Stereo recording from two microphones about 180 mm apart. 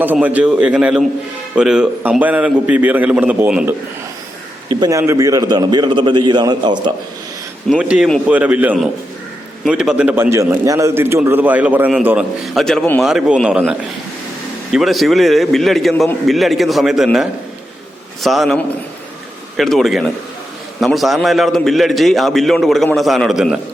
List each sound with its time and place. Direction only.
0.0 s a man's voice: 10° right (ahead or behind)
4.7 s a man's voice: 20° right (ahead or behind)
7.7 s a man's voice: 5° right (ahead or behind)